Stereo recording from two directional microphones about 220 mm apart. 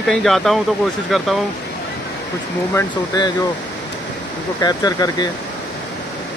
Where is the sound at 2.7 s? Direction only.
15° left (ahead or behind).